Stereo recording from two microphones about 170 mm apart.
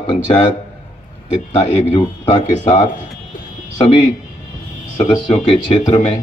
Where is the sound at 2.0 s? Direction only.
40° left (ahead or behind).